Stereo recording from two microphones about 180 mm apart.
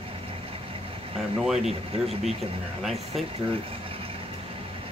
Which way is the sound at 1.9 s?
35° right (ahead or behind).